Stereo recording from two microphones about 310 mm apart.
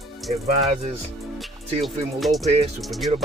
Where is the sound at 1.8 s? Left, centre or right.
Centre.